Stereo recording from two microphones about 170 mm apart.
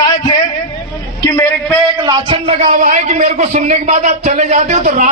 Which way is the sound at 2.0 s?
25° right (ahead or behind).